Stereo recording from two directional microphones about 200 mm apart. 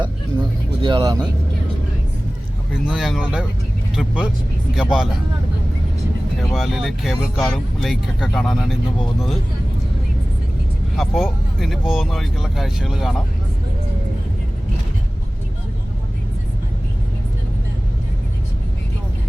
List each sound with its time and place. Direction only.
0.8 s speech: 25° right (ahead or behind)
2.8 s speech: centre (ahead or behind)
6.4 s speech: centre (ahead or behind)
10.9 s speech: centre (ahead or behind)